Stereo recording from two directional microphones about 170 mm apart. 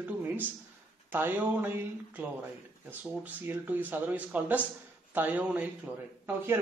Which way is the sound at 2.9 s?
10° right (ahead or behind).